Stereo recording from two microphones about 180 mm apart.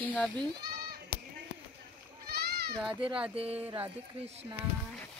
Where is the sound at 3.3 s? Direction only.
35° right (ahead or behind).